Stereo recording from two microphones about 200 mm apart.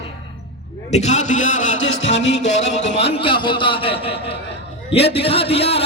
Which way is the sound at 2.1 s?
65° left (ahead or behind).